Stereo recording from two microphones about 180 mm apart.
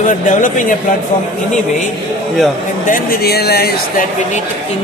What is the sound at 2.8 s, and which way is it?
A man's voice, 50° left (ahead or behind).